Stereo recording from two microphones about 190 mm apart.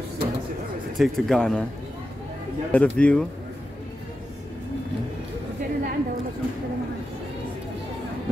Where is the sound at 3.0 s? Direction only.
5° left (ahead or behind).